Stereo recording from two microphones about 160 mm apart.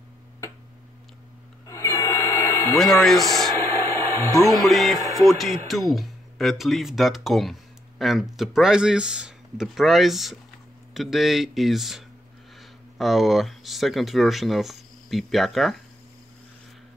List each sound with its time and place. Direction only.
1.7 s music: 20° left (ahead or behind)
2.8 s speech: centre (ahead or behind)
3.6 s a sound: 20° left (ahead or behind)
4.6 s speech: centre (ahead or behind)